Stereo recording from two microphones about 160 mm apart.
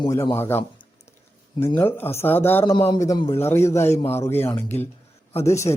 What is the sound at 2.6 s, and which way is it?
A man's voice, 30° left (ahead or behind).